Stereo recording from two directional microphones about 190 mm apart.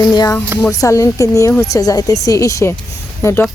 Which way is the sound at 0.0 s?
20° left (ahead or behind).